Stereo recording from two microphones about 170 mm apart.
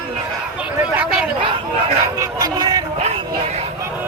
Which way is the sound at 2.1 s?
25° right (ahead or behind).